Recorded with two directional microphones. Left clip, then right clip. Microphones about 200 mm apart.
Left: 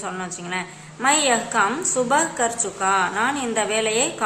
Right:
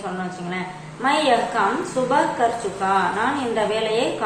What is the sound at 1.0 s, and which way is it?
A woman's voice, 35° left (ahead or behind).